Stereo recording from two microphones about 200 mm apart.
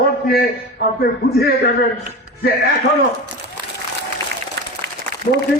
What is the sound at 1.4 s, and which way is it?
Speech, 50° left (ahead or behind).